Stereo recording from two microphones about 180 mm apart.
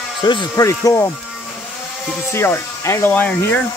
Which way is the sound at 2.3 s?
15° left (ahead or behind).